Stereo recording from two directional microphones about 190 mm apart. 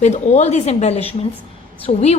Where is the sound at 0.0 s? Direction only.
35° left (ahead or behind).